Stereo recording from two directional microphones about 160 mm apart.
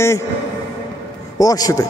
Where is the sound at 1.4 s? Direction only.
20° left (ahead or behind).